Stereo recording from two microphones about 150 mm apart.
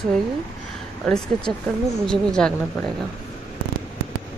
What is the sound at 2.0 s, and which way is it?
Speech, 5° left (ahead or behind).